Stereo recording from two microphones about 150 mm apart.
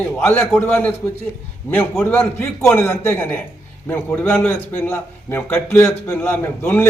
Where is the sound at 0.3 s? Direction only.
10° left (ahead or behind).